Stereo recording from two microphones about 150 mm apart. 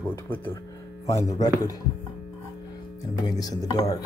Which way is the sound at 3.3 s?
25° left (ahead or behind).